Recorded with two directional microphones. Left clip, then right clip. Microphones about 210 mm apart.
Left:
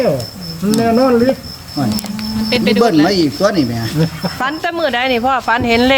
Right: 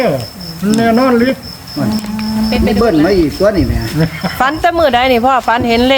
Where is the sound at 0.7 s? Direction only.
Centre (ahead or behind).